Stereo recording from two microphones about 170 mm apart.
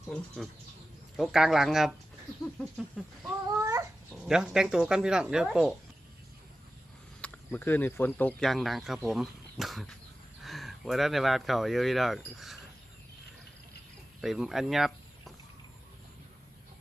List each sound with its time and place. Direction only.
0.1 s speech: 5° left (ahead or behind)
3.6 s babbling: 15° right (ahead or behind)
4.1 s speech: 5° right (ahead or behind)
7.2 s speech: 10° left (ahead or behind)
14.2 s speech: centre (ahead or behind)